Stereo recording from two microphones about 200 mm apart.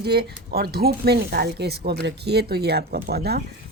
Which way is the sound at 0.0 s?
50° right (ahead or behind).